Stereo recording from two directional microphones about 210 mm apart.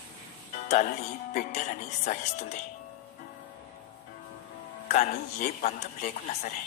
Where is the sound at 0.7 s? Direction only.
35° left (ahead or behind).